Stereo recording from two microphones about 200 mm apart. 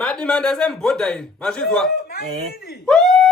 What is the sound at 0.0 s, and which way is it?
A man's voice, 5° left (ahead or behind).